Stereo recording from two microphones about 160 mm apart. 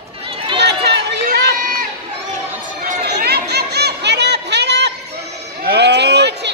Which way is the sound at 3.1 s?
90° right.